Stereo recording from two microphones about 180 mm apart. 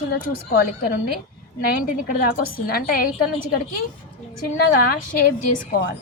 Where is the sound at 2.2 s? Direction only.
55° left (ahead or behind).